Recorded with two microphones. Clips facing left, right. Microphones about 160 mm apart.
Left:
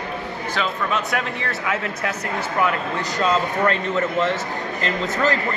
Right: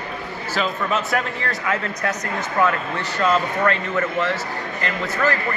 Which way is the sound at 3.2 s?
20° left (ahead or behind).